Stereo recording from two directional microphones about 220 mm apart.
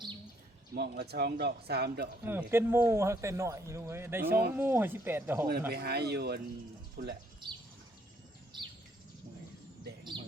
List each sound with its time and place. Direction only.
0.7 s speech: 45° right (ahead or behind)
2.2 s speech: 10° right (ahead or behind)
5.7 s speech: 45° right (ahead or behind)
10.0 s bird: 20° right (ahead or behind)